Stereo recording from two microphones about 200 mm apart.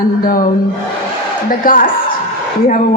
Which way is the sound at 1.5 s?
45° left (ahead or behind).